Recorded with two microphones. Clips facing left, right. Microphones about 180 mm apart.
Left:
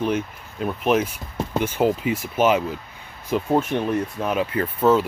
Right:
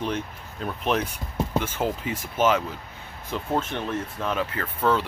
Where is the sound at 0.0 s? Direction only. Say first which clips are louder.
Left 5 dB; 10° left (ahead or behind).